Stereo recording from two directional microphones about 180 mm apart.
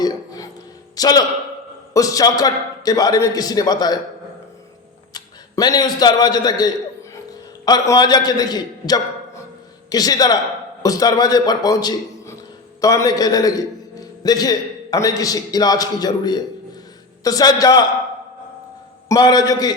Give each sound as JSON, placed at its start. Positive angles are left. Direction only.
{"t": 0.0, "sound": "a sound", "side_deg": 20}
{"t": 0.9, "sound": "a man's voice", "side_deg": 20}
{"t": 5.1, "sound": "a man's voice", "side_deg": 20}
{"t": 7.1, "sound": "a sound", "side_deg": 20}
{"t": 9.9, "sound": "a man's voice", "side_deg": 20}
{"t": 19.0, "sound": "a man's voice", "side_deg": 20}